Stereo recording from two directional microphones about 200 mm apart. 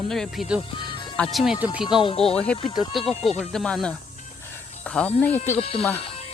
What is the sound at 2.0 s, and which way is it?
Speech, 30° left (ahead or behind).